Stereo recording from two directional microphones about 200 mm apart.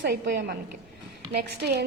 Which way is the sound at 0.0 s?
55° right (ahead or behind).